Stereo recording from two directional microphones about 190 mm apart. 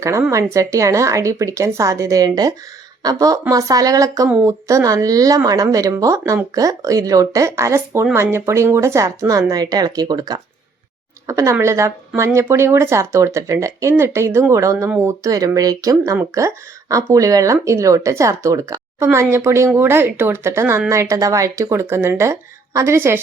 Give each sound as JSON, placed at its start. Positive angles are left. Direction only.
{"t": 0.0, "sound": "speech", "side_deg": -15}